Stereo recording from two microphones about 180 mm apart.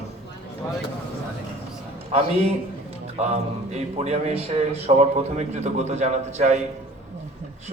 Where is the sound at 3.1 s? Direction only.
35° right (ahead or behind).